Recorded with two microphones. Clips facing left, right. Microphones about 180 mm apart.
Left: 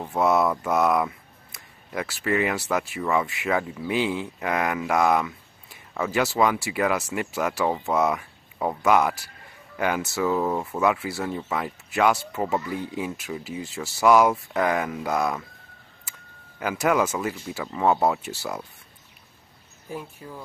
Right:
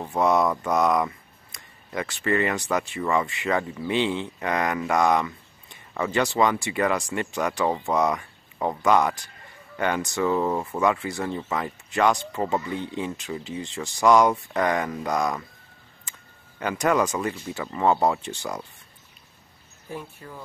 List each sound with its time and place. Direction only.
0.0 s speech: 5° left (ahead or behind)
19.9 s speech: 10° left (ahead or behind)